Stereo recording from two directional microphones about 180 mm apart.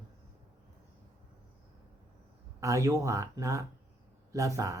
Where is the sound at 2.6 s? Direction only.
15° right (ahead or behind).